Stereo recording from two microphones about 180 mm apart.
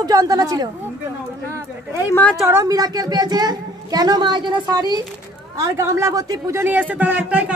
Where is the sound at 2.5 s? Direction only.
15° right (ahead or behind).